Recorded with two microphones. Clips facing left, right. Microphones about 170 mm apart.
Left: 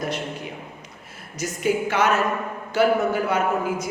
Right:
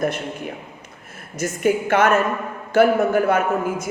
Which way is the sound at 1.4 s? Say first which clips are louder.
Right 3 dB; 50° right (ahead or behind).